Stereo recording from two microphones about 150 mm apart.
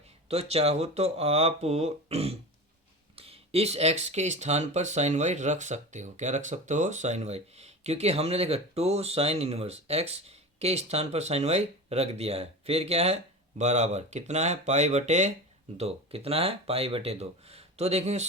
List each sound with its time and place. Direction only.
0.3 s speech: 45° right (ahead or behind)